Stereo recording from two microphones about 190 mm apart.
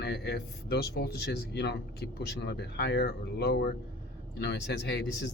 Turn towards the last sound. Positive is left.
turn(degrees=60)  # may be behind; listen again after turning